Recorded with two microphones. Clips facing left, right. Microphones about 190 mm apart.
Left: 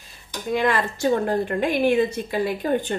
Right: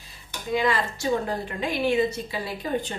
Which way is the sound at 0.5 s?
55° left (ahead or behind).